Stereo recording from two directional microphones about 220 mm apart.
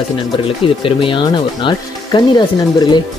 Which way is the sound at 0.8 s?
25° left (ahead or behind).